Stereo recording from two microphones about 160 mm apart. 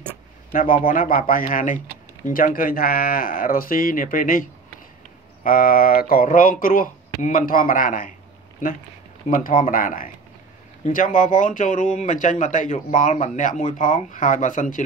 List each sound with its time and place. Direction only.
0.5 s speech: 60° left (ahead or behind)
9.3 s speech: 60° left (ahead or behind)